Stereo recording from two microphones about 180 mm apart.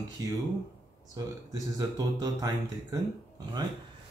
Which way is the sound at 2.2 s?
20° right (ahead or behind).